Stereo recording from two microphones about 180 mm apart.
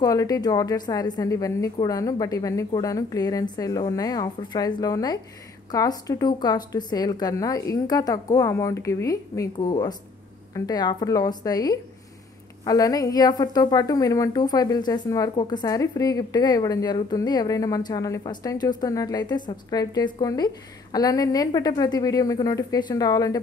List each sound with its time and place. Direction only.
0.0 s a woman's voice: 20° left (ahead or behind)